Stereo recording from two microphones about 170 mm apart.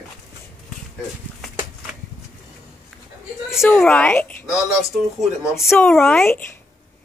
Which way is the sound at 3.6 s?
10° left (ahead or behind).